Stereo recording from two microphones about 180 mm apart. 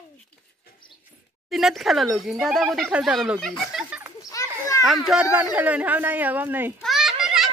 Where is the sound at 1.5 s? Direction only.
Centre (ahead or behind).